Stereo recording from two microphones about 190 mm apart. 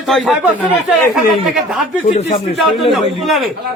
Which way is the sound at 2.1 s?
30° left (ahead or behind).